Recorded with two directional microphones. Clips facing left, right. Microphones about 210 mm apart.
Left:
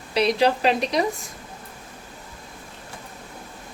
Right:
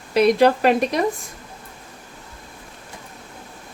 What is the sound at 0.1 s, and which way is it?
Speech, 50° right (ahead or behind).